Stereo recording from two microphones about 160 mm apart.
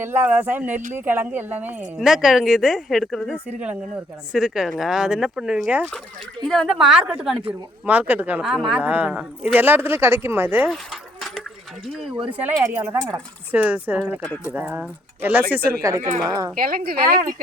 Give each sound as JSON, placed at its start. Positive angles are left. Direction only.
{"t": 0.0, "sound": "a man's voice", "side_deg": -15}
{"t": 12.1, "sound": "speech", "side_deg": -30}
{"t": 12.4, "sound": "a man's voice", "side_deg": -10}
{"t": 12.9, "sound": "speech", "side_deg": -25}
{"t": 13.5, "sound": "a man's voice", "side_deg": -10}
{"t": 15.8, "sound": "speech", "side_deg": -20}
{"t": 16.6, "sound": "speech", "side_deg": -65}